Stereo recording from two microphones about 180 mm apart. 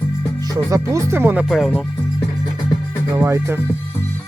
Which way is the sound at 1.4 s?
Centre (ahead or behind).